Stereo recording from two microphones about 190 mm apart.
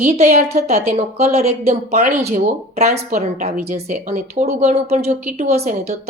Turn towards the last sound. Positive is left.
turn(degrees=-35)  # may be behind; listen again after turning